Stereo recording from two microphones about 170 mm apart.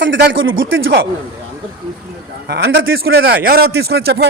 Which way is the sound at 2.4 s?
80° right.